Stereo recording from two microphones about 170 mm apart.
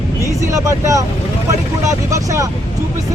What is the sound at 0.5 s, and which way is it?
Speech, 20° right (ahead or behind).